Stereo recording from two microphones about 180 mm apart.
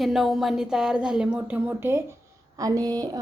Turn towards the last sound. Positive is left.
turn(degrees=-20)  # may be behind; listen again after turning